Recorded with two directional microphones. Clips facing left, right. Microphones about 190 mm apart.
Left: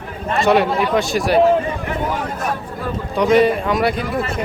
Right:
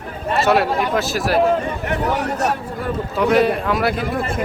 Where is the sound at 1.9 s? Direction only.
75° right (ahead or behind).